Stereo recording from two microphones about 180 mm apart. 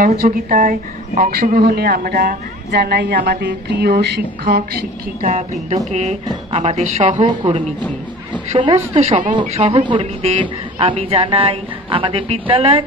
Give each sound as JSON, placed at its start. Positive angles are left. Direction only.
{"t": 0.0, "sound": "a woman's voice", "side_deg": -50}
{"t": 5.2, "sound": "a woman's voice", "side_deg": -40}